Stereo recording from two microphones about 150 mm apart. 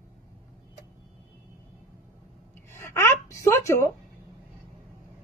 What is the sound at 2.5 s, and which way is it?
A woman's voice, 15° left (ahead or behind).